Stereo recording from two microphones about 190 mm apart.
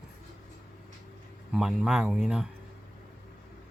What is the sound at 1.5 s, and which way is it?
Speech, 5° right (ahead or behind).